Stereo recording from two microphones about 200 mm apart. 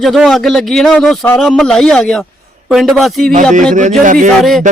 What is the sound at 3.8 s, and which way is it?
Speech, 40° right (ahead or behind).